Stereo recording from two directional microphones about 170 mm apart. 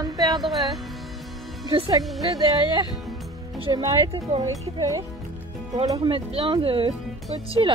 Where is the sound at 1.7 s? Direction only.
30° right (ahead or behind).